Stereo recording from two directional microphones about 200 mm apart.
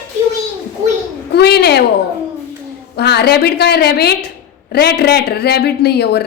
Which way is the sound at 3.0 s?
55° left (ahead or behind).